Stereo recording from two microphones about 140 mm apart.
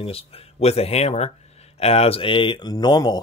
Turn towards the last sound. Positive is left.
turn(degrees=30)  # may be behind; listen again after turning